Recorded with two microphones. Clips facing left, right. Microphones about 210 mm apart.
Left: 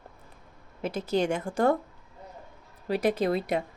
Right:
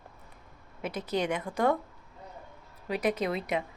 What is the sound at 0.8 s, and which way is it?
Speech, 30° left (ahead or behind).